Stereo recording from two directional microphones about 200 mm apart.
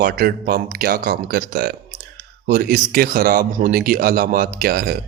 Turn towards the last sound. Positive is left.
turn(degrees=-50)  # may be behind; listen again after turning